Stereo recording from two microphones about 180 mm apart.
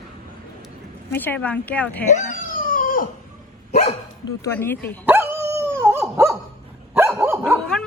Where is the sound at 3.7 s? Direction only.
35° left (ahead or behind).